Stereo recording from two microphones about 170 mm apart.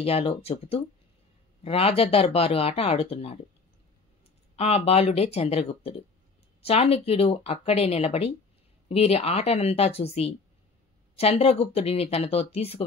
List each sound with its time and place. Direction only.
0.0 s speech: 35° left (ahead or behind)
4.6 s speech: 35° left (ahead or behind)